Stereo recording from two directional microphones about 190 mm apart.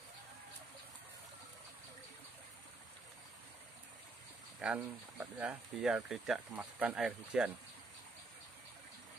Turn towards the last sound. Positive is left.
turn(degrees=-5)  # may be behind; listen again after turning